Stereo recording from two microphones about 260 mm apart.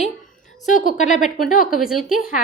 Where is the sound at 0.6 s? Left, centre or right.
Left.